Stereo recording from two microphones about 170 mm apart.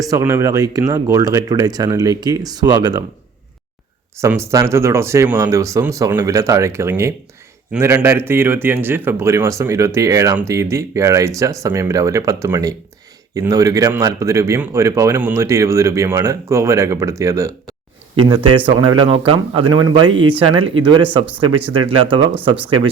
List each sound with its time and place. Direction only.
0.0 s speech: 20° right (ahead or behind)
4.2 s speech: 15° right (ahead or behind)
18.2 s speech: 30° right (ahead or behind)